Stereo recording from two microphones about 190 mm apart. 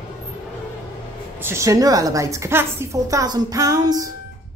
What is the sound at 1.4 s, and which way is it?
A woman's voice, 15° right (ahead or behind).